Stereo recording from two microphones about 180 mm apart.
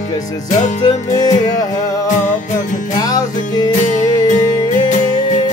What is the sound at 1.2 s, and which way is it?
Music, 20° left (ahead or behind).